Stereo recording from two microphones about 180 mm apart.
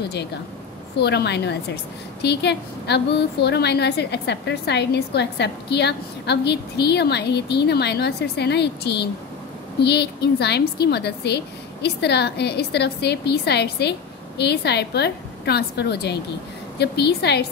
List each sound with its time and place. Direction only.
0.9 s a woman's voice: 70° left (ahead or behind)